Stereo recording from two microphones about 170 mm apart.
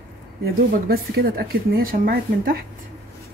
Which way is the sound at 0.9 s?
65° right (ahead or behind).